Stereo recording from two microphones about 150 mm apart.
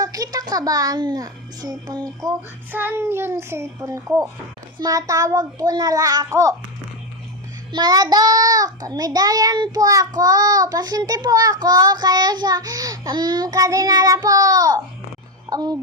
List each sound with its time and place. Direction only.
0.0 s child singing: 25° right (ahead or behind)
2.7 s a child's voice: 15° right (ahead or behind)
4.8 s child singing: 25° right (ahead or behind)
7.7 s child singing: 25° right (ahead or behind)
15.4 s a woman's voice: 25° right (ahead or behind)